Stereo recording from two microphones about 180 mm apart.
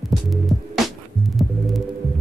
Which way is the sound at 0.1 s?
Centre (ahead or behind).